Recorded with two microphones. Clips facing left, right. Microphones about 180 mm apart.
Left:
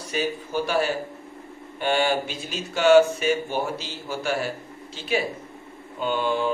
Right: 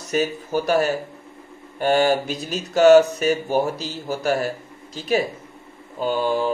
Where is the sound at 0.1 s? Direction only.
45° right (ahead or behind).